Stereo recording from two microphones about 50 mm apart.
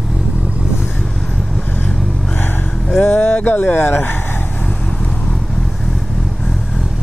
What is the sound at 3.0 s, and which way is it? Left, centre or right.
Speech, left.